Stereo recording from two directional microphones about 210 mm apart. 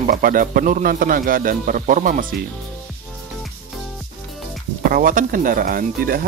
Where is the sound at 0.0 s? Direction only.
40° right (ahead or behind).